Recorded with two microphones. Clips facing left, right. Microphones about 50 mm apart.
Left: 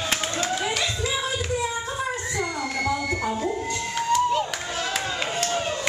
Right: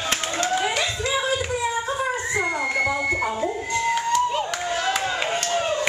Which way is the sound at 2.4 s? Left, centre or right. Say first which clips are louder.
Right 6 dB; right.